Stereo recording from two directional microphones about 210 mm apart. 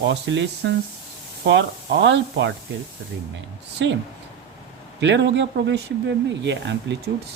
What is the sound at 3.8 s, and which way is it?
Speech, 60° right (ahead or behind).